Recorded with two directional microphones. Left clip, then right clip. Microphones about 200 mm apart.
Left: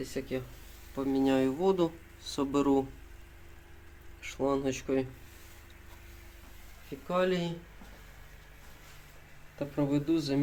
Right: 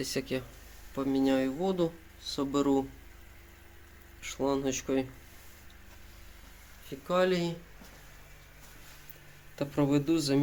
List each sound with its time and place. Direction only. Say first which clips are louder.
0.0 s speech: right 2 dB; 20° right (ahead or behind)
0.9 s speech: even; 5° right (ahead or behind)
4.2 s speech: even; centre (ahead or behind)
7.1 s speech: right 2 dB; 5° right (ahead or behind)
9.6 s speech: right 3 dB; 25° right (ahead or behind)